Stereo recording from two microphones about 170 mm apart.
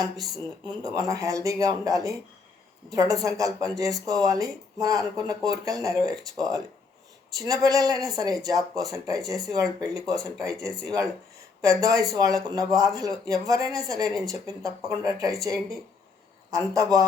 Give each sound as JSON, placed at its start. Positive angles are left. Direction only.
{"t": 0.8, "sound": "speech", "side_deg": -20}
{"t": 16.5, "sound": "a man's voice", "side_deg": -20}